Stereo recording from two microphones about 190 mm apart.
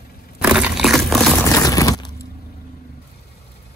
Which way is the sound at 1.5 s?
20° left (ahead or behind).